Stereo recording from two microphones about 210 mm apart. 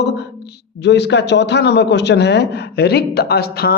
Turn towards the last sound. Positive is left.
turn(degrees=50)  # may be behind; listen again after turning